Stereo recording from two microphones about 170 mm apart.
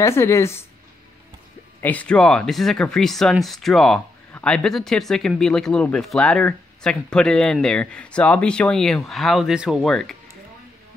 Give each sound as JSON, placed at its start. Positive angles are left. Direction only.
{"t": 0.0, "sound": "speech", "side_deg": 15}
{"t": 1.8, "sound": "speech", "side_deg": 10}